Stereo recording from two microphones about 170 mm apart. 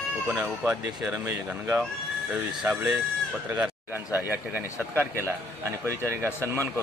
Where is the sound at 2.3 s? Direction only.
10° right (ahead or behind).